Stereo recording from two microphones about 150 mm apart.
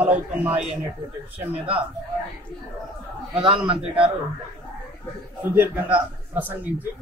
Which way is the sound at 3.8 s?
40° right (ahead or behind).